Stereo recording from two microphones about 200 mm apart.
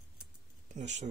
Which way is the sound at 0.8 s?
35° right (ahead or behind).